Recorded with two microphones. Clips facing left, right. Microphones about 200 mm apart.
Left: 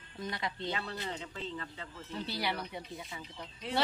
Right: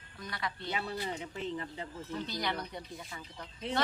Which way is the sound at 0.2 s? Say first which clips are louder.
Left 2 dB; 20° left (ahead or behind).